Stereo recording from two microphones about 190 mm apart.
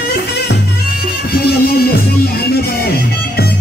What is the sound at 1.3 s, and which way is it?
Music, 55° left (ahead or behind).